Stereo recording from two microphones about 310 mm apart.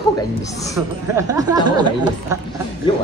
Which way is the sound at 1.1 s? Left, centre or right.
Centre.